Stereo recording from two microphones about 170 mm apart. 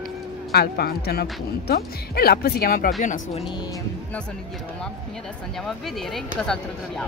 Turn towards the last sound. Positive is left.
turn(degrees=5)  # may be behind; listen again after turning